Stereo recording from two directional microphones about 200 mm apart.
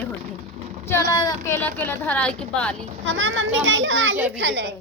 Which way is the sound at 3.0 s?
70° right (ahead or behind).